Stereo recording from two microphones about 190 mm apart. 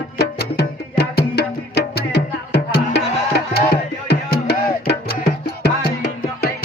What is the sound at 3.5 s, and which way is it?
Music, 60° left (ahead or behind).